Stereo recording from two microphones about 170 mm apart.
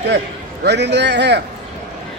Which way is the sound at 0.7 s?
90° right.